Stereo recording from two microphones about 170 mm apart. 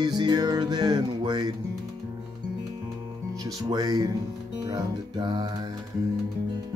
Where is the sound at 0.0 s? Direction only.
25° right (ahead or behind).